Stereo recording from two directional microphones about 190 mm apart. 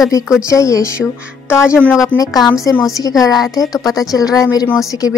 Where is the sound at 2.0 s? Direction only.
15° left (ahead or behind).